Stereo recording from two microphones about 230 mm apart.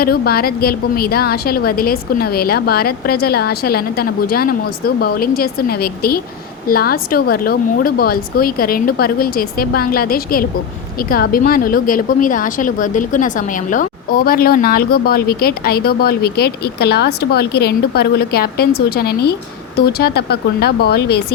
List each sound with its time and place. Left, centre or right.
0.0 s a woman's voice: left